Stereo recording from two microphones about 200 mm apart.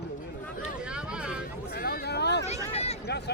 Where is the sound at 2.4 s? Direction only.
30° left (ahead or behind).